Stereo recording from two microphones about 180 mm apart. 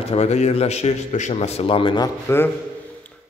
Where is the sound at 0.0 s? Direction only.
35° left (ahead or behind).